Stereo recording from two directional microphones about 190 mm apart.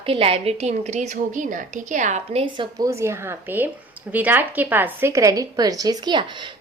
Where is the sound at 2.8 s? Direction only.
15° right (ahead or behind).